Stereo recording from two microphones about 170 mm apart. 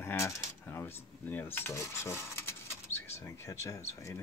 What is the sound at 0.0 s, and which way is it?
Speech, 15° left (ahead or behind).